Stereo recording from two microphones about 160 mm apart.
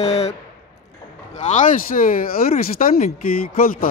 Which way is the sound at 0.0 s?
40° left (ahead or behind).